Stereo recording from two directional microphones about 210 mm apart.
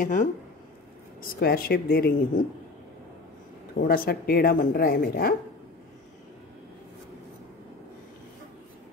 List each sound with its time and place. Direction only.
0.0 s speech: 40° left (ahead or behind)
3.7 s speech: 45° left (ahead or behind)